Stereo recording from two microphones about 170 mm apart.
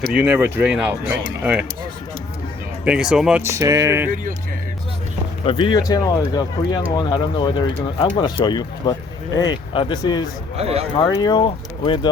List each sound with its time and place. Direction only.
0.1 s speech: 10° right (ahead or behind)
2.8 s speech: 5° right (ahead or behind)
3.5 s speech: 20° right (ahead or behind)
5.5 s speech: 30° left (ahead or behind)
10.6 s speech: 35° right (ahead or behind)
10.9 s speech: 25° left (ahead or behind)